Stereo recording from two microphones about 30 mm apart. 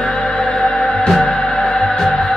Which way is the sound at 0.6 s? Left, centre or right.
Left.